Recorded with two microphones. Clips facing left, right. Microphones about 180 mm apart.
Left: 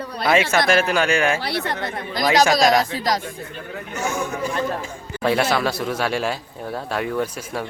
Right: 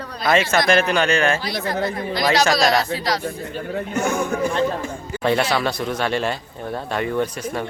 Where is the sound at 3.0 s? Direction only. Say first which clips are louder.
Left 1 dB; 45° left (ahead or behind).